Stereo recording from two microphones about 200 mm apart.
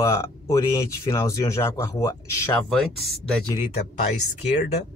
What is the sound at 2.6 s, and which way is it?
Speech, centre (ahead or behind).